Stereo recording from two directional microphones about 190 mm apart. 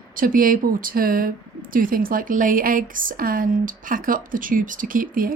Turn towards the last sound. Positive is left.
turn(degrees=-50)  # may be behind; listen again after turning